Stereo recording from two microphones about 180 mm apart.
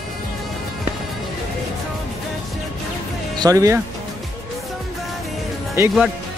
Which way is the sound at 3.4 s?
20° right (ahead or behind).